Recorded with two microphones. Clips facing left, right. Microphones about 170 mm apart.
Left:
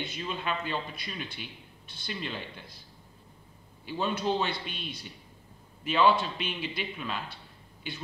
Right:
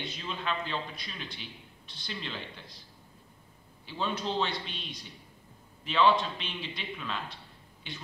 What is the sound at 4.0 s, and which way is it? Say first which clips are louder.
Speech: left 2 dB; 10° left (ahead or behind).